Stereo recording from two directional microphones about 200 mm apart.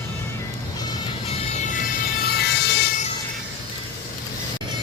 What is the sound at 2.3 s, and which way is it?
Music, 55° left (ahead or behind).